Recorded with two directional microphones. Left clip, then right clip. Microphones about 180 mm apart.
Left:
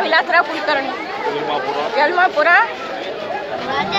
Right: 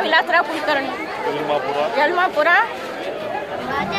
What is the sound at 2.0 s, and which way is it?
Speech, 10° right (ahead or behind).